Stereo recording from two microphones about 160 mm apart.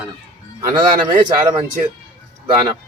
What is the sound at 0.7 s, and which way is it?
Speech, 30° right (ahead or behind).